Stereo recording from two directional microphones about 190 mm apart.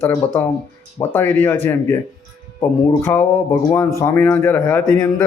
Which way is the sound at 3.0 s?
10° left (ahead or behind).